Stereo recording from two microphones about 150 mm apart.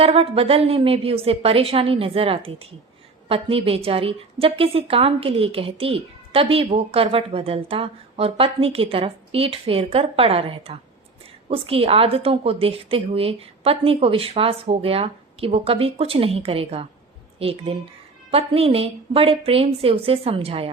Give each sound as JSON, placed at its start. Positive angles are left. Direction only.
{"t": 0.0, "sound": "a woman's voice", "side_deg": -40}